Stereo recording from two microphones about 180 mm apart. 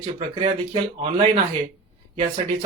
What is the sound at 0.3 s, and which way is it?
Speech, 30° right (ahead or behind).